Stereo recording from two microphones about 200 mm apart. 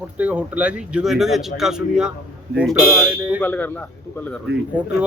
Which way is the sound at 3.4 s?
10° left (ahead or behind).